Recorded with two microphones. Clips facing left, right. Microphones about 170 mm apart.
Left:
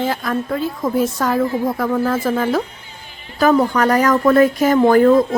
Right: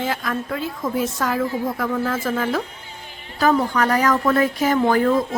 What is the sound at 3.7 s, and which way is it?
Speech, 45° left (ahead or behind).